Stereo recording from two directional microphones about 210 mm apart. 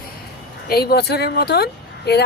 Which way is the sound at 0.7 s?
50° left (ahead or behind).